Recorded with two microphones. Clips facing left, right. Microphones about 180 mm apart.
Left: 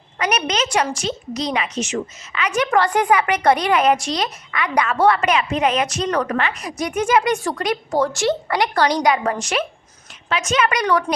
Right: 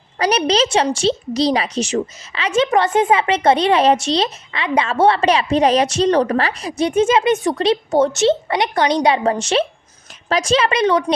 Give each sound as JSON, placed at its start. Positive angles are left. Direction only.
{"t": 0.2, "sound": "a woman's voice", "side_deg": -30}